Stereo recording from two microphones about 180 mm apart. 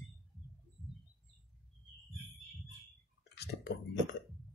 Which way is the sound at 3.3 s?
65° left (ahead or behind).